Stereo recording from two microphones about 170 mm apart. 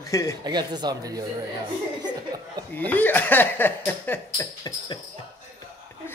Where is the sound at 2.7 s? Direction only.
10° left (ahead or behind).